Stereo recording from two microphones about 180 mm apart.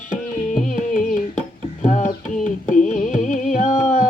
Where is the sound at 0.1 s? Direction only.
45° left (ahead or behind).